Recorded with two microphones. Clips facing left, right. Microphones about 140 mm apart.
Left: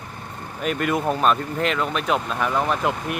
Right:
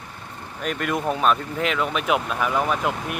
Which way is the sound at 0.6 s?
Centre (ahead or behind).